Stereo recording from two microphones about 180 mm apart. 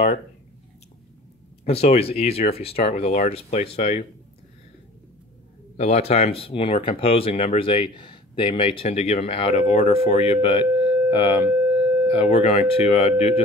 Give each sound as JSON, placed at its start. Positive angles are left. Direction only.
{"t": 1.6, "sound": "speech", "side_deg": 35}
{"t": 5.8, "sound": "speech", "side_deg": 35}